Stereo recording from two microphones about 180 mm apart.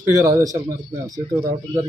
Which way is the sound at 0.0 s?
15° right (ahead or behind).